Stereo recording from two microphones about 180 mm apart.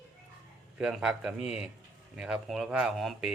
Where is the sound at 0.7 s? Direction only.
5° right (ahead or behind).